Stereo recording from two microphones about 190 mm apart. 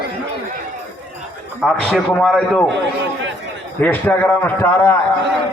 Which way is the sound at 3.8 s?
10° left (ahead or behind).